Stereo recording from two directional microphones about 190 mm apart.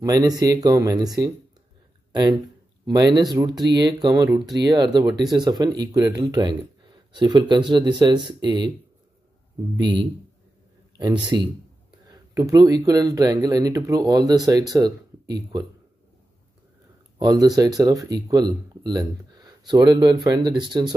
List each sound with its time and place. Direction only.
0.0 s speech: 20° right (ahead or behind)
2.9 s speech: 20° right (ahead or behind)
4.3 s speech: centre (ahead or behind)
4.7 s speech: 20° right (ahead or behind)
11.0 s speech: 20° right (ahead or behind)
17.2 s speech: 20° right (ahead or behind)